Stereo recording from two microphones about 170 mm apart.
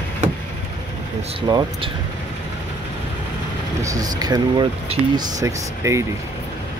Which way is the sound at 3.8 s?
20° right (ahead or behind).